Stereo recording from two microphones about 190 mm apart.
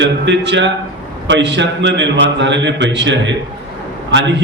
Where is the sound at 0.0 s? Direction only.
70° right (ahead or behind).